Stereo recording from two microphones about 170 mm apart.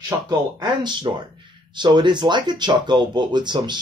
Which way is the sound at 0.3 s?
25° right (ahead or behind).